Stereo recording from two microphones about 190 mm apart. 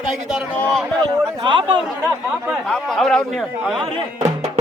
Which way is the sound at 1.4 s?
25° right (ahead or behind).